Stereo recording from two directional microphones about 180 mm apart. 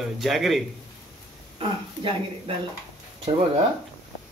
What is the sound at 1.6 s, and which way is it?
Speech, 30° right (ahead or behind).